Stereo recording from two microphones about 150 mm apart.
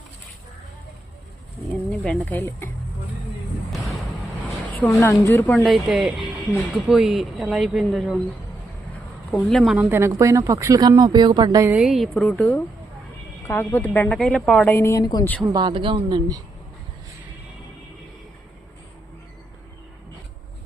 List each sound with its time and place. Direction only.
2.0 s speech: 10° left (ahead or behind)
4.9 s speech: 15° left (ahead or behind)
5.6 s speech: centre (ahead or behind)
9.4 s speech: centre (ahead or behind)
9.7 s speech: 15° right (ahead or behind)
11.7 s speech: 5° right (ahead or behind)
13.5 s speech: 15° left (ahead or behind)
14.7 s speech: 20° left (ahead or behind)
15.5 s a woman's voice: 35° right (ahead or behind)